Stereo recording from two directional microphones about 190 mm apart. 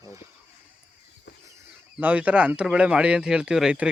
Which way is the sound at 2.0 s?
10° right (ahead or behind).